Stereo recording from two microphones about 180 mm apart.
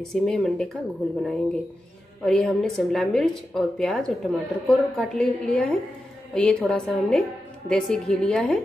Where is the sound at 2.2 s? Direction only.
5° left (ahead or behind).